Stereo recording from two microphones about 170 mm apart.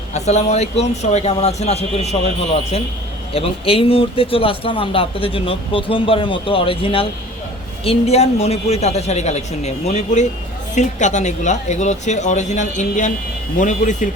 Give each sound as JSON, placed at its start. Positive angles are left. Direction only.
{"t": 0.1, "sound": "speech", "side_deg": 40}